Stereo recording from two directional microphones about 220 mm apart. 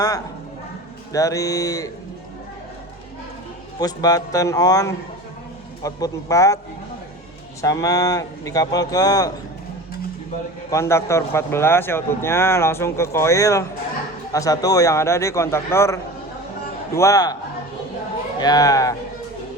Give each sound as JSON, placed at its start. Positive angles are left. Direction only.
{"t": 1.1, "sound": "speech", "side_deg": 15}
{"t": 3.8, "sound": "speech", "side_deg": 15}
{"t": 7.6, "sound": "speech", "side_deg": 15}
{"t": 10.7, "sound": "speech", "side_deg": 10}
{"t": 18.3, "sound": "speech", "side_deg": 20}